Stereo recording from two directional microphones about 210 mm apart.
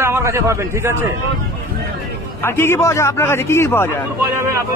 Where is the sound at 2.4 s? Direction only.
10° left (ahead or behind).